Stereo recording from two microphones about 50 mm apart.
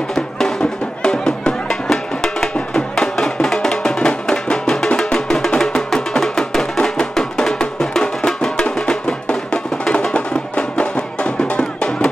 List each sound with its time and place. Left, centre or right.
0.1 s music: centre
5.6 s music: centre; by 12.1 s left